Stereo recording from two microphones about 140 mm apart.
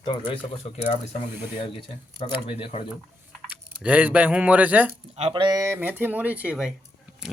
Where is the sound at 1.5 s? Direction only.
40° left (ahead or behind).